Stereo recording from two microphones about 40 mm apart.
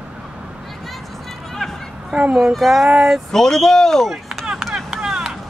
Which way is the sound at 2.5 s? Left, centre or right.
Centre.